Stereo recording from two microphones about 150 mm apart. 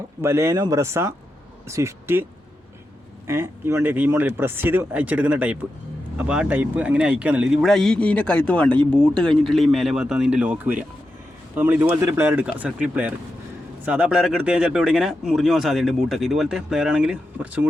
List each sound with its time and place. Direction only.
0.2 s speech: 15° right (ahead or behind)
3.2 s speech: 15° right (ahead or behind)